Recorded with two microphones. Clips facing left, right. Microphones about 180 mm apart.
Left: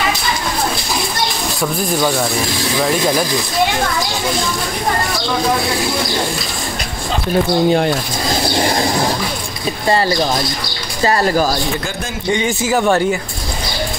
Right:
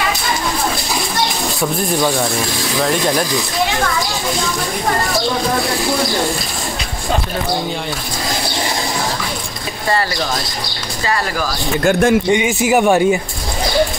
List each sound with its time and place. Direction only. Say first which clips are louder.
1.6 s speech: even; centre (ahead or behind)
11.1 s speech: left 6 dB; 35° left (ahead or behind)
11.8 s speech: right 12 dB; 55° right (ahead or behind)
12.3 s speech: right 2 dB; 15° right (ahead or behind)